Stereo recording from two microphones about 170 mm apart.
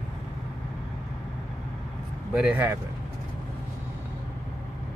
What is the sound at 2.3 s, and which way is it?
Speech, 10° right (ahead or behind).